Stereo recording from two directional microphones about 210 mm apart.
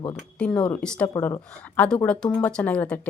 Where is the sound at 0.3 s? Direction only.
5° left (ahead or behind).